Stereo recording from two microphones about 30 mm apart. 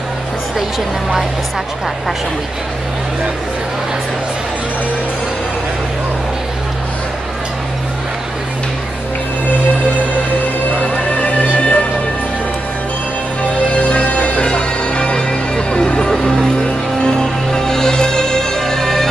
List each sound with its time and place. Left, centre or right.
11.1 s music: left
13.4 s music: left
14.5 s music: left
15.1 s music: left